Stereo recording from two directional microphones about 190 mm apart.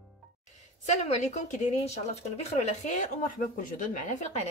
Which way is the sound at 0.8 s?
35° left (ahead or behind).